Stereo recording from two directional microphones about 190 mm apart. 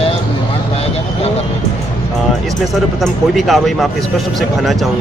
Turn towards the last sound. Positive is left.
turn(degrees=0)  # may be behind; listen again after turning